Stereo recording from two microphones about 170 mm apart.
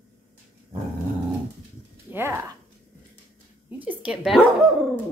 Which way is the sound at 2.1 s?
10° right (ahead or behind).